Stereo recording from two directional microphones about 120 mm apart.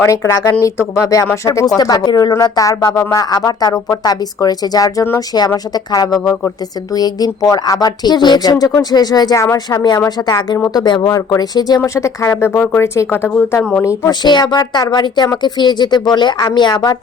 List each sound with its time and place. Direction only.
0.0 s speech: 25° left (ahead or behind)
11.8 s a woman's voice: 25° left (ahead or behind)
14.1 s speech: 35° left (ahead or behind)